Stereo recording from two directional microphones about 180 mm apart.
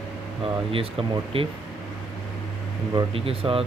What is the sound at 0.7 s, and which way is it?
Speech, 30° right (ahead or behind).